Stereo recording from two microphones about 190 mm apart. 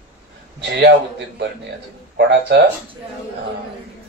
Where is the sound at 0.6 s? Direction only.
65° right (ahead or behind).